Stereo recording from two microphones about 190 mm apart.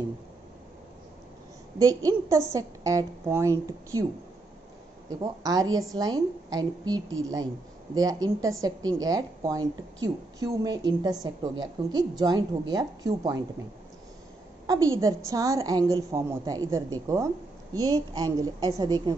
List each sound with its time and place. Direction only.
1.8 s a woman's voice: 20° right (ahead or behind)
5.2 s a woman's voice: 20° right (ahead or behind)
14.7 s a woman's voice: 15° right (ahead or behind)